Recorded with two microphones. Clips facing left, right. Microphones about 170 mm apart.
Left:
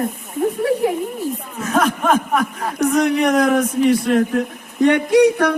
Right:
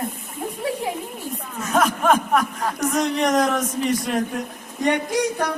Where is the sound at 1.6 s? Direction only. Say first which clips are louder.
Left 2 dB; centre (ahead or behind).